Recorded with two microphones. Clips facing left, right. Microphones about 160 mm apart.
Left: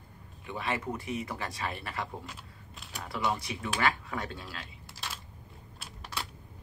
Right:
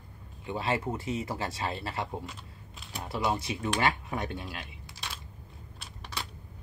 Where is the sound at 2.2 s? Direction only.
Centre (ahead or behind).